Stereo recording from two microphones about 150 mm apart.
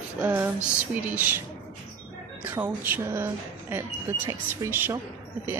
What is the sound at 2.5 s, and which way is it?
Speech, 10° right (ahead or behind).